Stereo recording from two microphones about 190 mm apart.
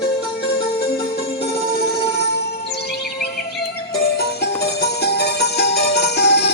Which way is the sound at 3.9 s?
55° left (ahead or behind).